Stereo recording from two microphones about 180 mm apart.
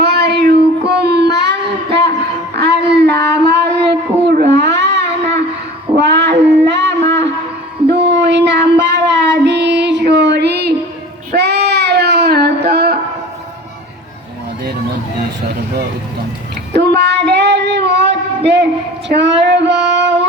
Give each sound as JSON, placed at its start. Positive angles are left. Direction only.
{"t": 0.0, "sound": "a sound", "side_deg": -65}
{"t": 2.6, "sound": "child singing", "side_deg": -65}
{"t": 6.0, "sound": "a sound", "side_deg": -70}
{"t": 7.9, "sound": "child singing", "side_deg": -70}
{"t": 16.7, "sound": "child singing", "side_deg": -70}
{"t": 19.0, "sound": "female singing", "side_deg": -80}